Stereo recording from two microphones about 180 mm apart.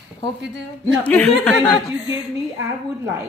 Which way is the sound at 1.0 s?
5° left (ahead or behind).